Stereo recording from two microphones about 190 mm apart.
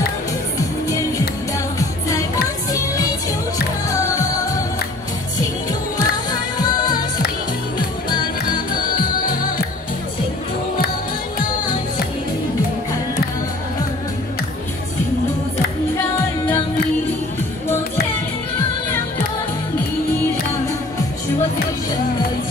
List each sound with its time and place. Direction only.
0.6 s music: 15° left (ahead or behind)
3.9 s music: 20° left (ahead or behind)
8.7 s music: 45° left (ahead or behind)